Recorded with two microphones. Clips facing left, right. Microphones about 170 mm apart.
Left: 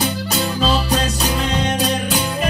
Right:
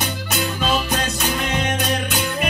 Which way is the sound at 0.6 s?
35° left (ahead or behind).